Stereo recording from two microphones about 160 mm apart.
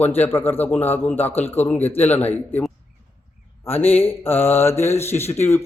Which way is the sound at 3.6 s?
10° left (ahead or behind).